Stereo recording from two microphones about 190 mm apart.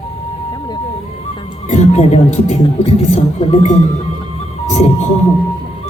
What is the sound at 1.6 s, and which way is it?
Speech, 35° left (ahead or behind).